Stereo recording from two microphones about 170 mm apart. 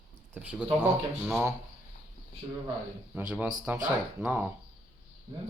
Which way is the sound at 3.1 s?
10° right (ahead or behind).